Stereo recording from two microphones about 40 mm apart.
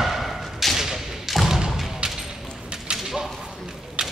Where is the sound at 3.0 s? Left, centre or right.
Centre.